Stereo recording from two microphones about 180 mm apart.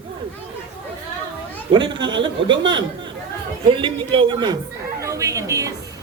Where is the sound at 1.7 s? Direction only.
25° right (ahead or behind).